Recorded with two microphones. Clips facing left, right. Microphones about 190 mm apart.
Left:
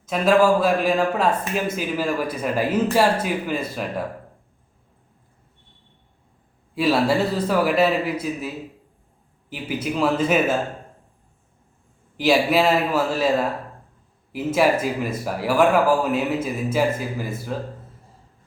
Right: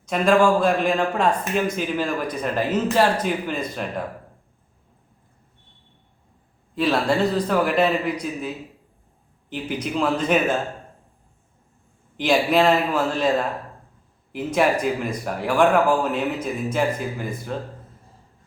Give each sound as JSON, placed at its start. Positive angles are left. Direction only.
{"t": 0.0, "sound": "a man's voice", "side_deg": 5}
{"t": 6.7, "sound": "a man's voice", "side_deg": 10}
{"t": 9.5, "sound": "speech", "side_deg": 5}
{"t": 12.1, "sound": "a man's voice", "side_deg": 5}